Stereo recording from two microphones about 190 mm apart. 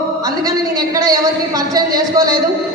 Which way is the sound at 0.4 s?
20° right (ahead or behind).